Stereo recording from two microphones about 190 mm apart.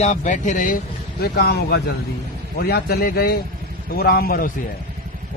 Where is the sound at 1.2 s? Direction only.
55° left (ahead or behind).